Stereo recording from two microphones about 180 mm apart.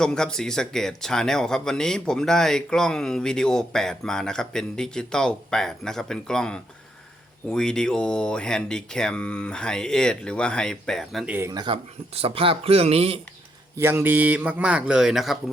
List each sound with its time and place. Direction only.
0.0 s speech: 5° left (ahead or behind)
11.3 s a man's voice: 20° right (ahead or behind)
13.7 s speech: 15° right (ahead or behind)